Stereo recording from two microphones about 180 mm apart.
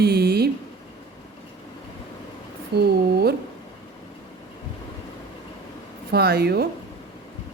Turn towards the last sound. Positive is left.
turn(degrees=-60)  # may be behind; listen again after turning